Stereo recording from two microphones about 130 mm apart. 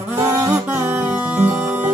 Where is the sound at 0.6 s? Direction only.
15° right (ahead or behind).